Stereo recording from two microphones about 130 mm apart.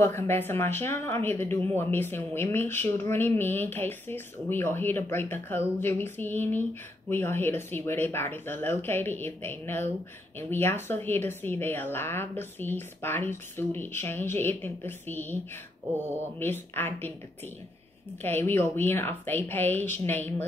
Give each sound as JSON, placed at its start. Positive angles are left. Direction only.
{"t": 0.0, "sound": "a woman's voice", "side_deg": 15}
{"t": 16.3, "sound": "a woman's voice", "side_deg": 15}
{"t": 18.2, "sound": "a woman's voice", "side_deg": 15}